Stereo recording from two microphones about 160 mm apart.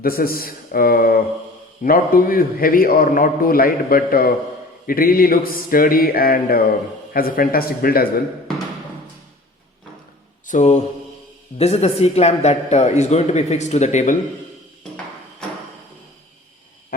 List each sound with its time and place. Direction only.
0.0 s a man's voice: 65° left (ahead or behind)
10.4 s mantra: 50° left (ahead or behind)
11.5 s a man's voice: 40° left (ahead or behind)